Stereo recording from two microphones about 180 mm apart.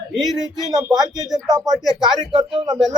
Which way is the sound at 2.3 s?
25° right (ahead or behind).